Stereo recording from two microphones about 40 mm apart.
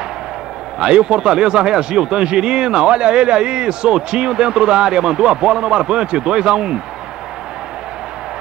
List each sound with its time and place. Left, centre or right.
0.7 s a man's voice: right